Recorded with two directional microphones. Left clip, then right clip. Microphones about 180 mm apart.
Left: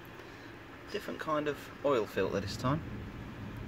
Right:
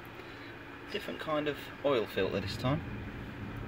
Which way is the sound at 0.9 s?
5° left (ahead or behind).